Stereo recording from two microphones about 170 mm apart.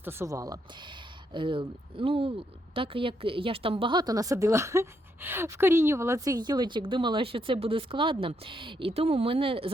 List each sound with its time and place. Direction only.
0.0 s a woman's voice: 15° right (ahead or behind); by 9.7 s 30° right (ahead or behind)